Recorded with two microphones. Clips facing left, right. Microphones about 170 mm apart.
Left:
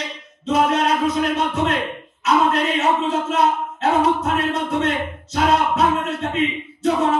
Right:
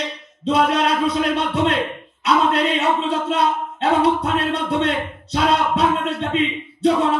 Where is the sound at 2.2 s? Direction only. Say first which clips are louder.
Even; 35° right (ahead or behind).